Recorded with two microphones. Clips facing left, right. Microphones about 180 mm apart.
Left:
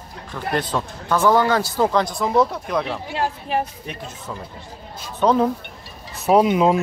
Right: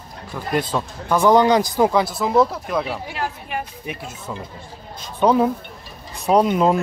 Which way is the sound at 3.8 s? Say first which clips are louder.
Right 2 dB; 10° right (ahead or behind).